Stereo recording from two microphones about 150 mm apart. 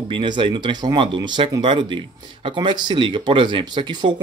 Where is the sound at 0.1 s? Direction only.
30° right (ahead or behind).